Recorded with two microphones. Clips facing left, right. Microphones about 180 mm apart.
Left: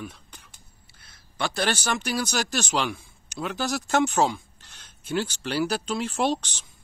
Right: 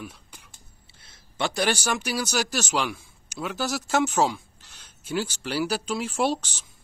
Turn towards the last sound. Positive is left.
turn(degrees=-10)  # may be behind; listen again after turning